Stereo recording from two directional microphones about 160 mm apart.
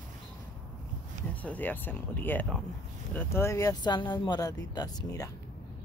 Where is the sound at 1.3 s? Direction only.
10° left (ahead or behind).